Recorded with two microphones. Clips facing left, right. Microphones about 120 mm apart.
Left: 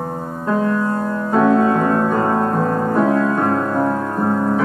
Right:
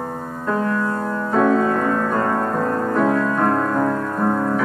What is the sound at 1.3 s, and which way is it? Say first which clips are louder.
Music: left 3 dB; 15° left (ahead or behind).